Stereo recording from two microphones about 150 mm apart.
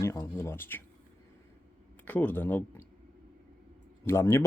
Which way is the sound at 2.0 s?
10° left (ahead or behind).